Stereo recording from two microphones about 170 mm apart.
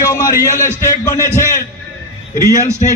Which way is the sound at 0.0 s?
15° left (ahead or behind).